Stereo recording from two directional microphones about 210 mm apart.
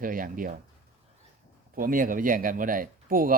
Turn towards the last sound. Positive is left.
turn(degrees=-40)  # may be behind; listen again after turning